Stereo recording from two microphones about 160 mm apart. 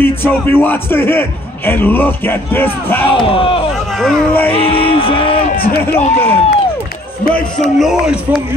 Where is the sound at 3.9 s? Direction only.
Centre (ahead or behind).